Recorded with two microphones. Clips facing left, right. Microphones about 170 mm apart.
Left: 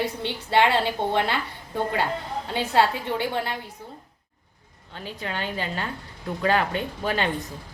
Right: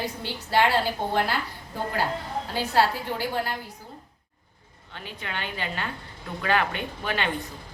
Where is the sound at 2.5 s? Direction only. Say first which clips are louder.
Left 2 dB; 25° left (ahead or behind).